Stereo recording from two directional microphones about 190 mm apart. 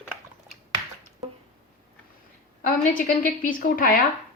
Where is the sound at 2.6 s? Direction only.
45° left (ahead or behind).